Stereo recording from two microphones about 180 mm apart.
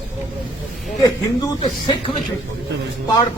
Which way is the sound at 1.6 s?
30° left (ahead or behind).